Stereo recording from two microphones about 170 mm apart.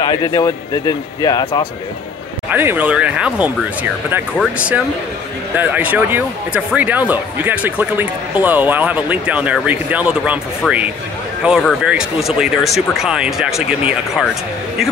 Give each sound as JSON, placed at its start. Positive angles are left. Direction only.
{"t": 0.0, "sound": "speech", "side_deg": 20}
{"t": 2.5, "sound": "a man's voice", "side_deg": -10}
{"t": 11.4, "sound": "speech", "side_deg": -5}